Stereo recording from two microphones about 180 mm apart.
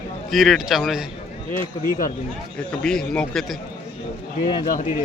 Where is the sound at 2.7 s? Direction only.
5° left (ahead or behind).